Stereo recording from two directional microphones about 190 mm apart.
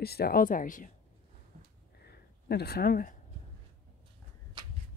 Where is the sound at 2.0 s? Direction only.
55° left (ahead or behind).